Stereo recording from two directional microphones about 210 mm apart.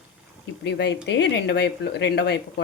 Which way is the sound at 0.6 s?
55° left (ahead or behind).